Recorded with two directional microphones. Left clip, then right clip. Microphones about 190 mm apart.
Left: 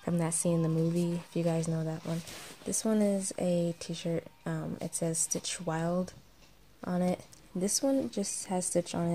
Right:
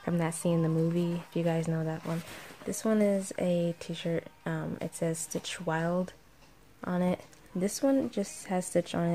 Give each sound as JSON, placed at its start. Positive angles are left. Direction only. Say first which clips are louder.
{"t": 0.0, "sound": "speech", "louder": "right 1 dB", "side_deg": 0}